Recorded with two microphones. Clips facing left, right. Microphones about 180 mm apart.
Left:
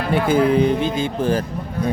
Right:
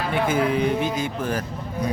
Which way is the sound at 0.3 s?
30° left (ahead or behind).